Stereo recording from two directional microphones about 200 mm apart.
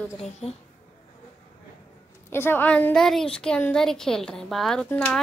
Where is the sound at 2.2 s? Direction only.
10° left (ahead or behind).